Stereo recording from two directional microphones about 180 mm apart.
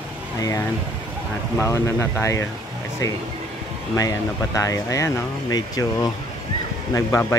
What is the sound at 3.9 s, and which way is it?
Speech, 20° left (ahead or behind).